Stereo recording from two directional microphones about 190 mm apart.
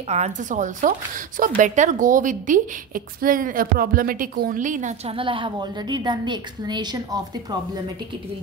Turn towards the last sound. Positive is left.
turn(degrees=-20)  # may be behind; listen again after turning